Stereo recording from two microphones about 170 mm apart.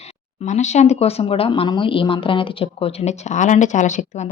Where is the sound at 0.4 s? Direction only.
45° left (ahead or behind).